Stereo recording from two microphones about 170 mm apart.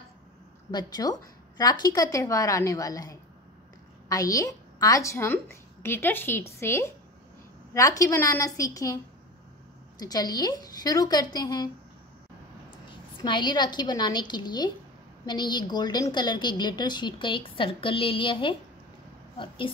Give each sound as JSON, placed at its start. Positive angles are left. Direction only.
{"t": 0.7, "sound": "a woman's voice", "side_deg": 25}
{"t": 13.2, "sound": "a woman's voice", "side_deg": 25}